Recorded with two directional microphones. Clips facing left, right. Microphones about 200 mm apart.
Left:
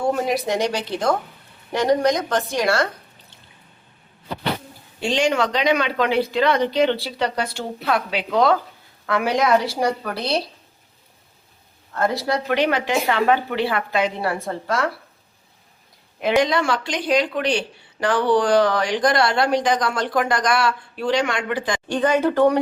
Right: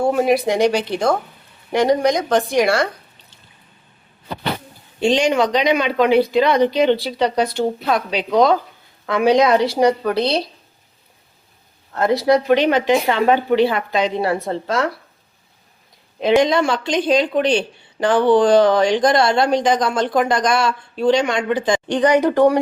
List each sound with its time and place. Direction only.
0.3 s speech: 10° right (ahead or behind)
4.9 s speech: 20° right (ahead or behind)
11.9 s speech: 20° right (ahead or behind)
16.2 s speech: 20° right (ahead or behind)